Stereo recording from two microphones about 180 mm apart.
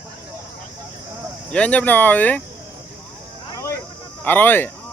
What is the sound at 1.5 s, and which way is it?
Speech, 5° left (ahead or behind).